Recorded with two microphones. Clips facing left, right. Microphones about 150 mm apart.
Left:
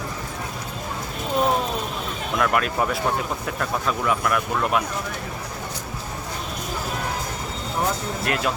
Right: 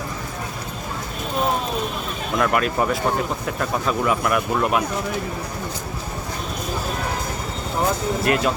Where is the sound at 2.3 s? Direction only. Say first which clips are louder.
Right 2 dB; centre (ahead or behind).